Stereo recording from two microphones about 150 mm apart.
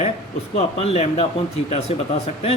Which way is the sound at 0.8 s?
40° left (ahead or behind).